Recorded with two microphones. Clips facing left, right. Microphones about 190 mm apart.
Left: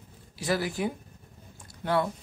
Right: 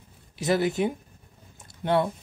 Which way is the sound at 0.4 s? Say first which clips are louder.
Right 5 dB; 20° right (ahead or behind).